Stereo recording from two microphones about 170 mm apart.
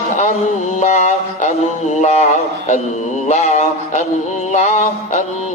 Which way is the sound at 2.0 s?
40° left (ahead or behind).